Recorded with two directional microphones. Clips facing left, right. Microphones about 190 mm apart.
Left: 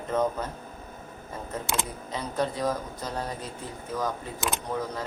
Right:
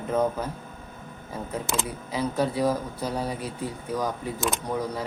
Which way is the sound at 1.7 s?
5° right (ahead or behind).